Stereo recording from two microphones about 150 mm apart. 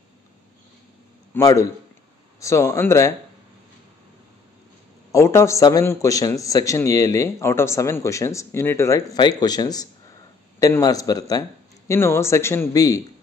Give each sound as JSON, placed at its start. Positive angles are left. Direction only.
{"t": 1.3, "sound": "a man's voice", "side_deg": 20}
{"t": 5.1, "sound": "a man's voice", "side_deg": 20}